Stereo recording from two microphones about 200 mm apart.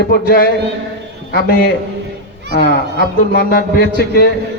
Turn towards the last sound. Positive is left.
turn(degrees=50)  # may be behind; listen again after turning